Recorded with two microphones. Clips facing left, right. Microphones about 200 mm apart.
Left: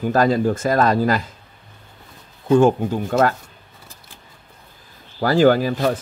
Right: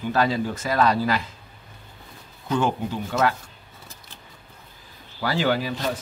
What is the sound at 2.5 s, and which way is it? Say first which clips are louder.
Speech: left 9 dB; 45° left (ahead or behind).